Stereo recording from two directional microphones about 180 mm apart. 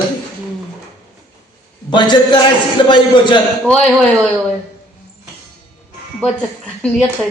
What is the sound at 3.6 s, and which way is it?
Speech, 5° left (ahead or behind).